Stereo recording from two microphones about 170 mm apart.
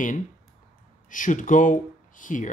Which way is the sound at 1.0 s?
50° left (ahead or behind).